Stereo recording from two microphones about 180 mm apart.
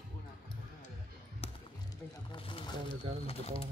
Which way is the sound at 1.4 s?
35° left (ahead or behind).